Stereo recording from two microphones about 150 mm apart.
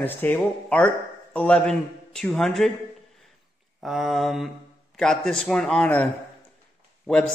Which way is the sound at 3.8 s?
Centre (ahead or behind).